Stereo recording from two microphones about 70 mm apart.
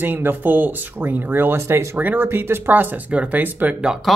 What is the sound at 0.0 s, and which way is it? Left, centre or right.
Speech, right.